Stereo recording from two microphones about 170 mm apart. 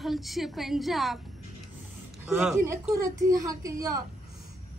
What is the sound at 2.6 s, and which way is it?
A woman's voice, 20° right (ahead or behind).